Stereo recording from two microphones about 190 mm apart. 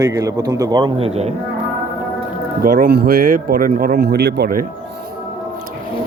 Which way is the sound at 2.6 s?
50° right (ahead or behind).